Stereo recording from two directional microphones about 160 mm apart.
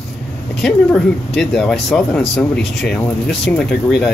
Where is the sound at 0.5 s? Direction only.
5° left (ahead or behind).